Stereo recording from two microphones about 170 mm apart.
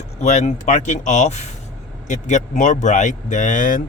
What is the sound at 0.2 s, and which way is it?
Speech, 40° left (ahead or behind).